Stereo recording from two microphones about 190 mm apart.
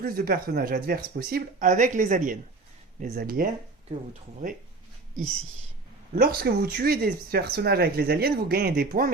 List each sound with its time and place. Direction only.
0.0 s speech: 50° right (ahead or behind)
6.1 s speech: 55° right (ahead or behind)